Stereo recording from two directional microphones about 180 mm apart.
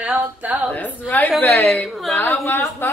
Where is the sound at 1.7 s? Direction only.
Centre (ahead or behind).